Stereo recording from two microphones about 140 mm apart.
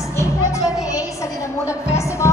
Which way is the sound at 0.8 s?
20° left (ahead or behind).